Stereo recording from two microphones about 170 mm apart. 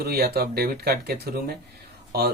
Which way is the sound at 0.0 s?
65° right (ahead or behind).